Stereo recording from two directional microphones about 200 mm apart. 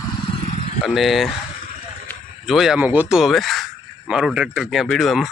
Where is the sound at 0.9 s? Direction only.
Centre (ahead or behind).